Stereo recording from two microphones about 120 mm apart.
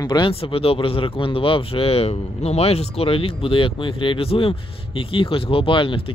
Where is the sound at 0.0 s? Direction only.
35° left (ahead or behind).